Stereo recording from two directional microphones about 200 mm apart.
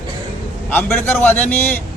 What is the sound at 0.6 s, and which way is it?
A man's voice, 10° left (ahead or behind).